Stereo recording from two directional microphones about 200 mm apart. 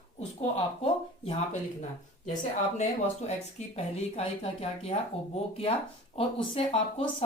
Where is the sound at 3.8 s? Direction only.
30° left (ahead or behind).